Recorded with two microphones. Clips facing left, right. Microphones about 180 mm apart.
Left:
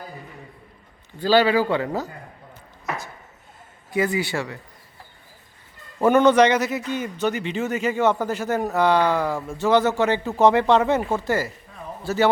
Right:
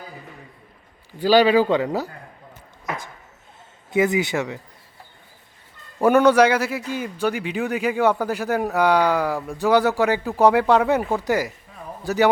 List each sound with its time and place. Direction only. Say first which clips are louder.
1.2 s a man's voice: right 2 dB; 15° right (ahead or behind)
3.9 s speech: right 3 dB; 20° right (ahead or behind)
6.0 s a man's voice: right 1 dB; 10° right (ahead or behind)